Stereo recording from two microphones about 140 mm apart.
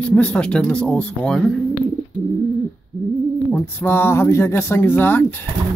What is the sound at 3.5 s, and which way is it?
Speech, 15° left (ahead or behind).